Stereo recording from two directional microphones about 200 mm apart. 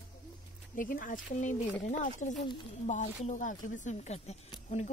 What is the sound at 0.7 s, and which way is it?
Speech, 40° left (ahead or behind).